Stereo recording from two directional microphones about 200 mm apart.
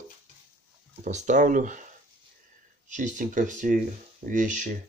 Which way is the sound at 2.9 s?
40° right (ahead or behind).